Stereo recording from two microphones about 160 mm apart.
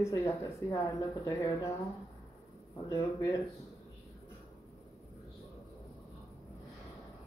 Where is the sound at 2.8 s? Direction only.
20° left (ahead or behind).